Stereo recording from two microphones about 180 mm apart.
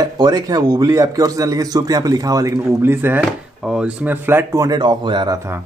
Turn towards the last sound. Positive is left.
turn(degrees=-25)  # may be behind; listen again after turning